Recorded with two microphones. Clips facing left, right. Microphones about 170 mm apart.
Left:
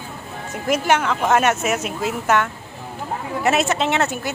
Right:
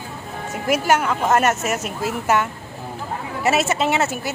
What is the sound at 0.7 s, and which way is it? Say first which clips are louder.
Speech: even; 5° right (ahead or behind).